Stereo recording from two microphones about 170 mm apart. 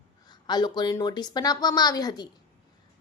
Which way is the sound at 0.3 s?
25° left (ahead or behind).